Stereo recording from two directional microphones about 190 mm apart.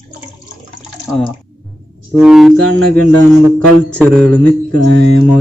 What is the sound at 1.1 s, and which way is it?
Speech, centre (ahead or behind).